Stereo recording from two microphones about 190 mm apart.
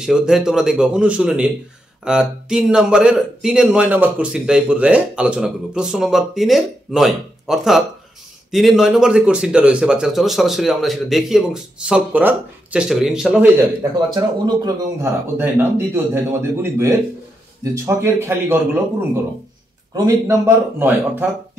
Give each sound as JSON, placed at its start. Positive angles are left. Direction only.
{"t": 0.0, "sound": "speech", "side_deg": -5}
{"t": 14.1, "sound": "a man's voice", "side_deg": -20}
{"t": 20.2, "sound": "a man's voice", "side_deg": -10}